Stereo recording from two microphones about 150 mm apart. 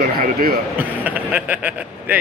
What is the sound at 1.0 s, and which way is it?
A man's voice, 10° right (ahead or behind).